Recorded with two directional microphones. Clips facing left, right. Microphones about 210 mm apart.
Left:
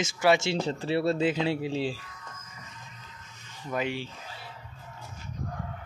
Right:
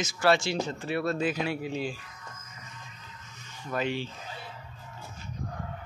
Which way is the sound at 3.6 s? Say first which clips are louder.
Even; 10° left (ahead or behind).